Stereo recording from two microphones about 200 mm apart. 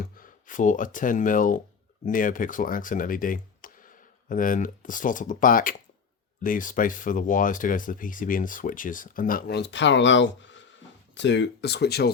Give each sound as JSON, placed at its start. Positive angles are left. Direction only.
{"t": 0.0, "sound": "speech", "side_deg": 45}